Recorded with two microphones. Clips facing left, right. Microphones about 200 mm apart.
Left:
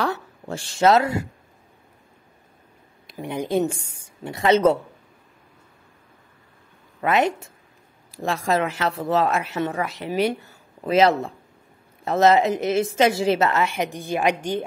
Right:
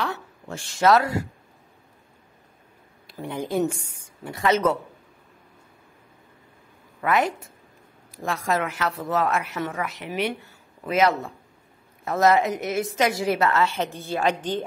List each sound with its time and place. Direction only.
0.0 s a sound: 30° left (ahead or behind)
3.1 s a woman's voice: 15° left (ahead or behind)
7.0 s a woman's voice: 25° left (ahead or behind)